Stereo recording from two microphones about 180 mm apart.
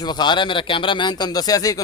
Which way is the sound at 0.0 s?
25° left (ahead or behind).